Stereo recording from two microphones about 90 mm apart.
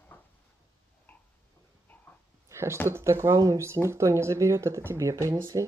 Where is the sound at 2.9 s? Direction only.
30° right (ahead or behind).